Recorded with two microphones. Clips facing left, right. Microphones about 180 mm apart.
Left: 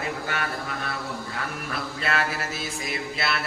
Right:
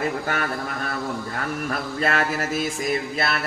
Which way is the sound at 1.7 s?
45° right (ahead or behind).